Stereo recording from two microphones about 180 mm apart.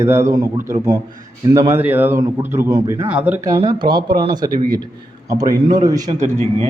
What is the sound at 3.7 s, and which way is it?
Speech, 25° right (ahead or behind).